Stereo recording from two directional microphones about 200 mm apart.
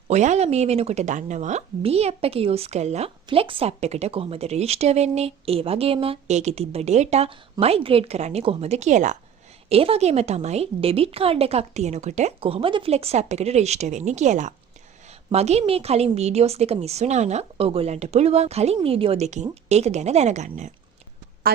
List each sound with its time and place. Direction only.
0.1 s speech: 35° right (ahead or behind)